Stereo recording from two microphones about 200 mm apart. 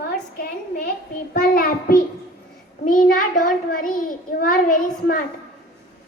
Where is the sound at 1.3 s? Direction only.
45° left (ahead or behind).